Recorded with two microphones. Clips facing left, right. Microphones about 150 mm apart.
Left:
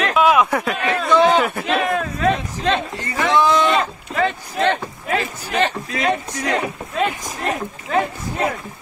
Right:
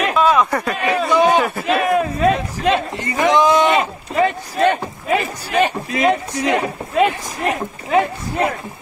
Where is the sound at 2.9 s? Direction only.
20° right (ahead or behind).